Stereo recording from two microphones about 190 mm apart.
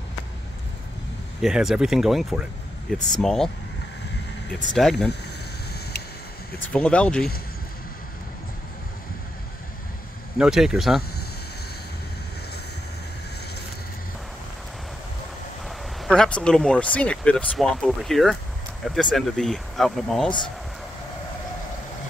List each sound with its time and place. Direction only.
1.4 s speech: centre (ahead or behind)
4.7 s speech: centre (ahead or behind)
6.7 s speech: 5° left (ahead or behind)
10.3 s speech: 5° right (ahead or behind)
16.0 s speech: 5° left (ahead or behind)
20.2 s speech: 25° left (ahead or behind)